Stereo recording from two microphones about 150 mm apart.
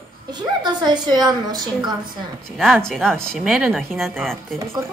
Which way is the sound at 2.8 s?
Centre (ahead or behind).